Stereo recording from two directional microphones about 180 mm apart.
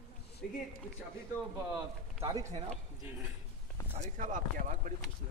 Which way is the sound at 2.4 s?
40° right (ahead or behind).